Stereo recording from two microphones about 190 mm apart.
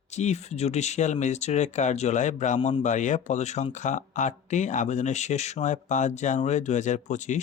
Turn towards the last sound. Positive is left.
turn(degrees=40)  # may be behind; listen again after turning